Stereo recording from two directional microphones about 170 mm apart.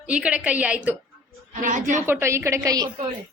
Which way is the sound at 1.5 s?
50° right (ahead or behind).